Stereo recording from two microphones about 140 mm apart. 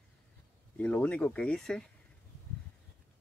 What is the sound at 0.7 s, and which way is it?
Speech, 10° left (ahead or behind).